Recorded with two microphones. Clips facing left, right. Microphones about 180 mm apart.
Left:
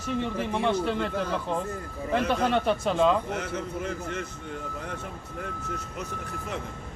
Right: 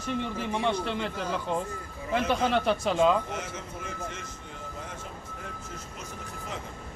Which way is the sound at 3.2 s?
65° left (ahead or behind).